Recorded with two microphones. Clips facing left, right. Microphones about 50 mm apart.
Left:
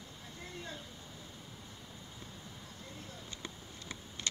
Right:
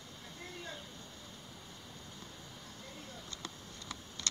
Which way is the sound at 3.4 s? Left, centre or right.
Left.